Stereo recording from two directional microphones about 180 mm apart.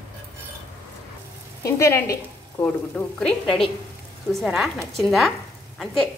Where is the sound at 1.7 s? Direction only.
15° left (ahead or behind).